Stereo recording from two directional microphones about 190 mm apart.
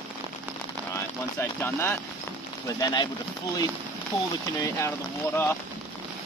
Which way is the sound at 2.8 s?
20° left (ahead or behind).